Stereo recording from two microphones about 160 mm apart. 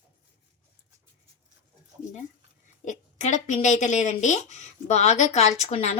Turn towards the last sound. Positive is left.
turn(degrees=45)  # may be behind; listen again after turning